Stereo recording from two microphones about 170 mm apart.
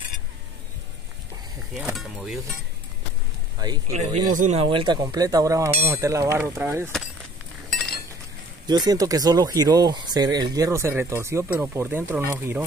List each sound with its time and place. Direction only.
1.8 s speech: 5° right (ahead or behind)
3.6 s speech: 25° right (ahead or behind)
3.9 s speech: 40° right (ahead or behind)
4.6 s speech: 30° right (ahead or behind)
8.6 s speech: 25° right (ahead or behind)